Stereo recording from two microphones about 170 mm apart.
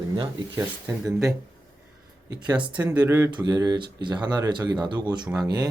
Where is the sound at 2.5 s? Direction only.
10° right (ahead or behind).